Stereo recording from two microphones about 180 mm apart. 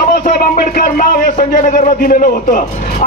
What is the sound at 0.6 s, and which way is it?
A man's voice, 55° left (ahead or behind).